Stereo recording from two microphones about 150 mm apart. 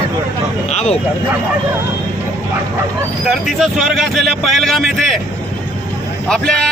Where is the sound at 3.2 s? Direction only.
Centre (ahead or behind).